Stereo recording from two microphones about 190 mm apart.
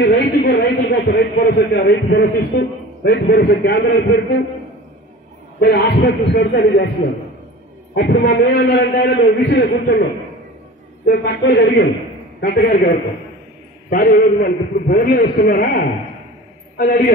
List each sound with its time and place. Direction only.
0.0 s a man's voice: 60° left (ahead or behind)
5.6 s a man's voice: 65° left (ahead or behind)
7.9 s a man's voice: 60° left (ahead or behind)
11.1 s a man's voice: 60° left (ahead or behind)